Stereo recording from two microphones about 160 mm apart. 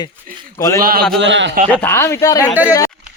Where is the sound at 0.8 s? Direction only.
65° right (ahead or behind).